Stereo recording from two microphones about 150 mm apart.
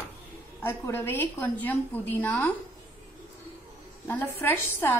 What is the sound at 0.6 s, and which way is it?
A woman's voice, 15° left (ahead or behind).